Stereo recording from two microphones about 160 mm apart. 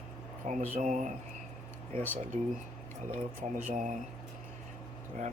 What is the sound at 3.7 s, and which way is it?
Speech, 50° right (ahead or behind).